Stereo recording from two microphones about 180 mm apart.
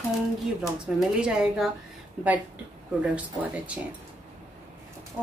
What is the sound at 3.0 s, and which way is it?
Speech, 5° right (ahead or behind).